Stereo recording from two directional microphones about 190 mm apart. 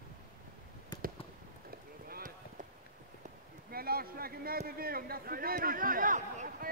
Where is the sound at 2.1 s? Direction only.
45° right (ahead or behind).